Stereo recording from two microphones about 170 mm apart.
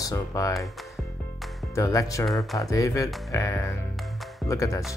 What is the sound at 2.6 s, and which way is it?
Speech, 20° left (ahead or behind).